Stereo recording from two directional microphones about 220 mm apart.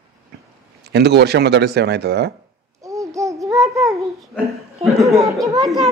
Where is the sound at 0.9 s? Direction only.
50° right (ahead or behind).